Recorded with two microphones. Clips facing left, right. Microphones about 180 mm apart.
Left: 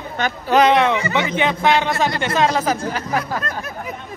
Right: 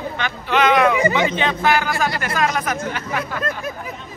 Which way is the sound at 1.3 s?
15° left (ahead or behind).